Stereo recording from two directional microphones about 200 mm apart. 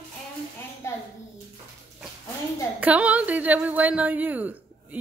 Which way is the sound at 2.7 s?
5° right (ahead or behind).